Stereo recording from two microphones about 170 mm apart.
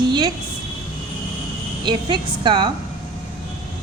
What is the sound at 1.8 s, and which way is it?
Speech, 25° right (ahead or behind).